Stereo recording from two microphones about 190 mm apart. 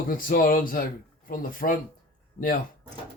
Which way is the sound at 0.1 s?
50° left (ahead or behind).